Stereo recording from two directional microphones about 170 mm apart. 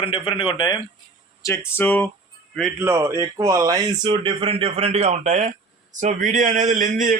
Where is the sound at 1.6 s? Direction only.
10° left (ahead or behind).